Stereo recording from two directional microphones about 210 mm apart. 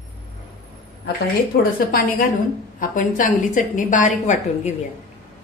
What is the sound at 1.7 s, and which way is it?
A woman's voice, 45° left (ahead or behind).